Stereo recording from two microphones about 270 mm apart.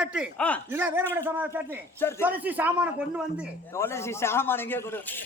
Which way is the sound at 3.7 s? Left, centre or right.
Centre.